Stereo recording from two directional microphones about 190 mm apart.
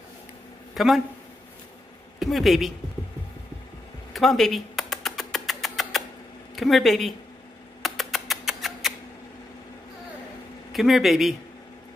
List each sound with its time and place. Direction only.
0.7 s a woman's voice: centre (ahead or behind)
2.1 s a woman's voice: centre (ahead or behind)
4.1 s music: centre (ahead or behind)
6.5 s a woman's voice: centre (ahead or behind)
7.8 s rodents: centre (ahead or behind)
10.7 s a woman's voice: centre (ahead or behind)